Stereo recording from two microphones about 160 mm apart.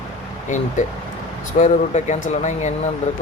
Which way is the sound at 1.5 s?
50° left (ahead or behind).